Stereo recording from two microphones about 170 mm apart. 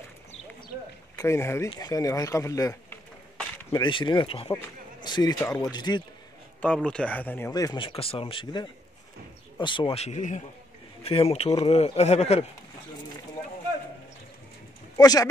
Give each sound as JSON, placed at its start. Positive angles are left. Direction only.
{"t": 1.1, "sound": "speech", "side_deg": 15}
{"t": 6.6, "sound": "speech", "side_deg": 5}
{"t": 15.0, "sound": "speech", "side_deg": 20}